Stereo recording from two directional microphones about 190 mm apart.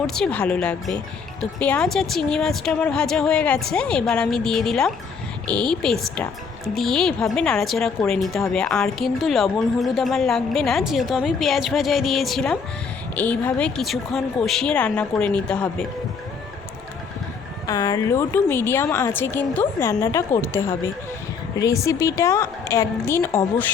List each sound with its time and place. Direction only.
0.1 s a woman's voice: 5° left (ahead or behind)
17.7 s a woman's voice: 20° left (ahead or behind)